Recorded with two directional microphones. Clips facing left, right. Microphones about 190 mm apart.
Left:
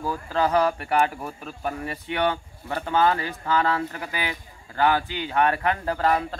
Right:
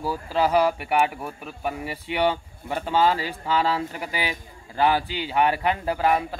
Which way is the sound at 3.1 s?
25° right (ahead or behind).